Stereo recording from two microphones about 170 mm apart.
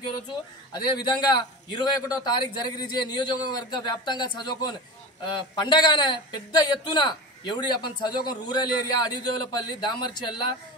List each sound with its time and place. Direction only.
0.7 s a man's voice: 25° left (ahead or behind)